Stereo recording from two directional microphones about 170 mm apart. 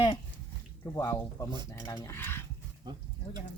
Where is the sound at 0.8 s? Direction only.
15° left (ahead or behind).